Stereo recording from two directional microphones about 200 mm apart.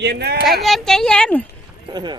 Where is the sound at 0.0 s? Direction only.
55° right (ahead or behind).